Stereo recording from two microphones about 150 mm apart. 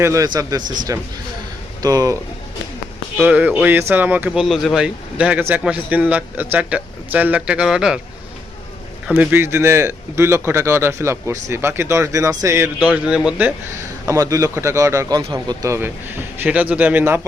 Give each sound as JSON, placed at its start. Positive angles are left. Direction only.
{"t": 0.0, "sound": "a man's voice", "side_deg": -20}
{"t": 3.2, "sound": "a man's voice", "side_deg": -10}
{"t": 9.0, "sound": "a man's voice", "side_deg": -10}
{"t": 13.7, "sound": "a man's voice", "side_deg": -20}
{"t": 16.4, "sound": "a man's voice", "side_deg": -10}